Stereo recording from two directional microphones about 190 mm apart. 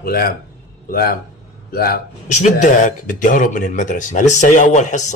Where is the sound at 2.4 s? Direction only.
40° left (ahead or behind).